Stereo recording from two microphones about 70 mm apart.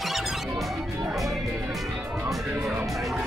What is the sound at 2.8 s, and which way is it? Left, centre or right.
Music, centre.